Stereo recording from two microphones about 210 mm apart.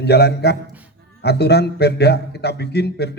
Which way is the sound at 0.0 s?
50° left (ahead or behind).